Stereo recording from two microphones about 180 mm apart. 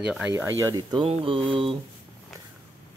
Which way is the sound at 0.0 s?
5° right (ahead or behind).